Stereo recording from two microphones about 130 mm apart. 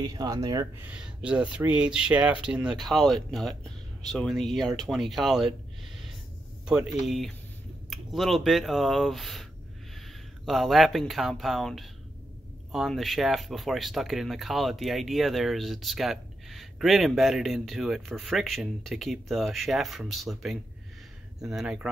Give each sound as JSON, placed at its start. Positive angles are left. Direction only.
{"t": 0.0, "sound": "speech", "side_deg": -30}
{"t": 0.7, "sound": "speech", "side_deg": -10}
{"t": 6.6, "sound": "speech", "side_deg": -5}